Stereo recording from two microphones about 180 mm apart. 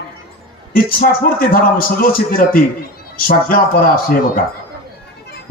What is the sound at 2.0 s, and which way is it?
Speech, 55° left (ahead or behind).